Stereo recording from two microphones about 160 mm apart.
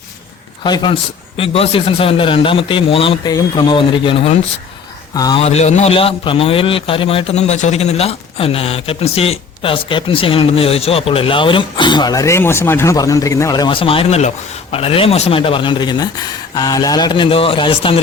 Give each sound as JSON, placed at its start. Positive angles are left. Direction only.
{"t": 0.6, "sound": "a man's voice", "side_deg": 30}
{"t": 5.1, "sound": "a man's voice", "side_deg": 25}
{"t": 5.4, "sound": "a man's voice", "side_deg": 40}